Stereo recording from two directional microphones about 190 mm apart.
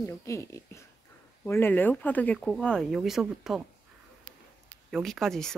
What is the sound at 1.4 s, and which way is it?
Speech, 10° left (ahead or behind).